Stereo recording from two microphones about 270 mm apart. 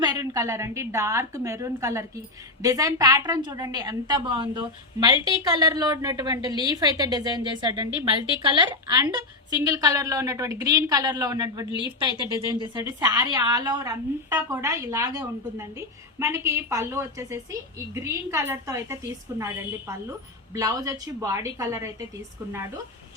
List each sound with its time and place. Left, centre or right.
0.0 s a woman's voice: centre
20.5 s a woman's voice: centre